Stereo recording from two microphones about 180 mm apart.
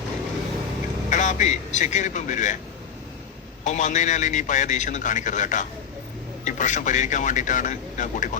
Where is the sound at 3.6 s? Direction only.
45° left (ahead or behind).